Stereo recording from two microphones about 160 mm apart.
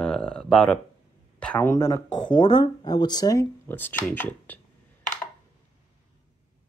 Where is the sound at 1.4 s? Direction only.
10° left (ahead or behind).